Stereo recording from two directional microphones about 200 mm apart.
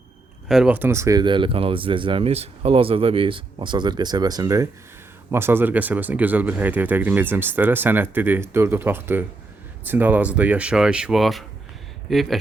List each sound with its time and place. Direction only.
0.4 s speech: 5° right (ahead or behind)